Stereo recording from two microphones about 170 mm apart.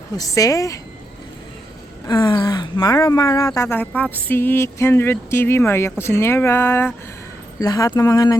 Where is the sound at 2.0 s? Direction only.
25° left (ahead or behind).